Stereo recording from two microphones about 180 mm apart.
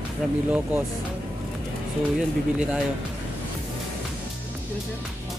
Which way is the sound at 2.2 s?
5° right (ahead or behind).